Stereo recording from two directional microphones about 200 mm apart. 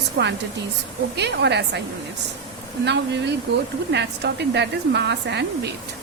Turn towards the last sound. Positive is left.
turn(degrees=-55)  # may be behind; listen again after turning